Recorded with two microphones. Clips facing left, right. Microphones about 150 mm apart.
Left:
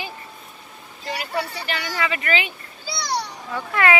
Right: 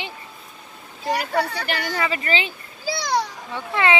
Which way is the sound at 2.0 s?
30° right (ahead or behind).